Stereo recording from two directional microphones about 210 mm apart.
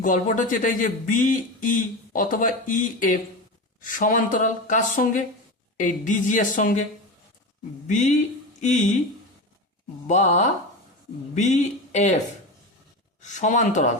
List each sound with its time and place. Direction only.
0.0 s speech: 40° left (ahead or behind)
7.9 s speech: 35° left (ahead or behind)
10.1 s speech: 35° left (ahead or behind)
13.2 s speech: 35° left (ahead or behind)